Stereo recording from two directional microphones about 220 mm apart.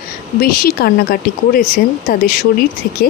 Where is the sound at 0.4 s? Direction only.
40° left (ahead or behind).